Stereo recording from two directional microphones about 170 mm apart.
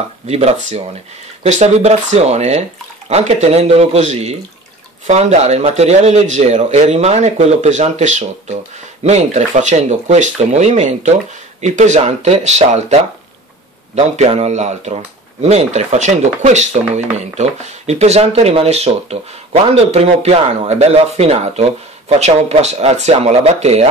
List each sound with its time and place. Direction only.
0.3 s speech: 40° right (ahead or behind)
13.9 s speech: 40° right (ahead or behind)